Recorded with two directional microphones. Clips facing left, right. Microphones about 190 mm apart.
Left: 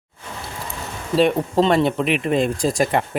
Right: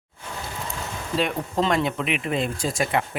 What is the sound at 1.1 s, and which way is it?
Speech, 30° left (ahead or behind).